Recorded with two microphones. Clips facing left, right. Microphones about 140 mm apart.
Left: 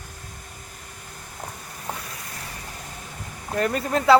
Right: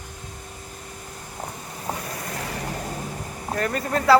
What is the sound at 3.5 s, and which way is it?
Speech, 20° left (ahead or behind).